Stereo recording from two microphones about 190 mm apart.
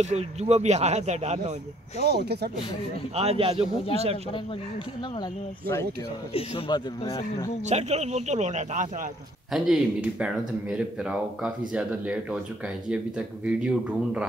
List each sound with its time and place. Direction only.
0.0 s speech: 35° right (ahead or behind)
2.0 s speech: 60° right (ahead or behind)
3.2 s speech: 30° right (ahead or behind)
6.3 s a man's voice: 30° left (ahead or behind)
7.1 s speech: 15° left (ahead or behind)
7.6 s speech: 35° right (ahead or behind)
9.5 s speech: centre (ahead or behind)
13.5 s speech: 5° right (ahead or behind)